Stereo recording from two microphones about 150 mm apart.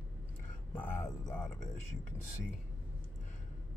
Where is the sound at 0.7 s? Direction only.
15° left (ahead or behind).